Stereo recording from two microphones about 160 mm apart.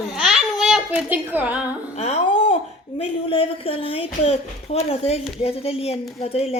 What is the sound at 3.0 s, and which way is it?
Speech, 35° left (ahead or behind).